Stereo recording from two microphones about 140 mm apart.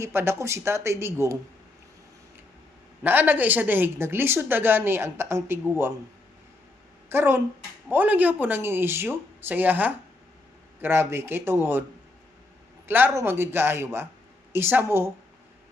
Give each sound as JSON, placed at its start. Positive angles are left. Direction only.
{"t": 0.0, "sound": "speech", "side_deg": -20}
{"t": 3.0, "sound": "speech", "side_deg": -15}
{"t": 7.1, "sound": "speech", "side_deg": -15}
{"t": 12.9, "sound": "speech", "side_deg": -15}